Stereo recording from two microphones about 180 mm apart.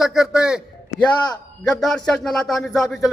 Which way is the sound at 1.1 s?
20° left (ahead or behind).